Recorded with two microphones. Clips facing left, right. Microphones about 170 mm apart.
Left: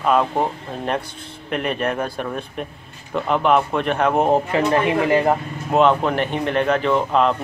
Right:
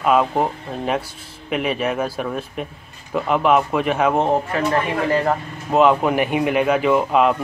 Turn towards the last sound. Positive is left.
turn(degrees=-10)  # may be behind; listen again after turning